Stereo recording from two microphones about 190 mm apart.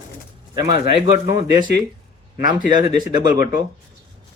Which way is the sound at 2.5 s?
20° right (ahead or behind).